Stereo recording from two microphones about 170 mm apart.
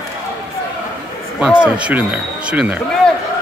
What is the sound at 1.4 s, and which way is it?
Speech, 5° right (ahead or behind).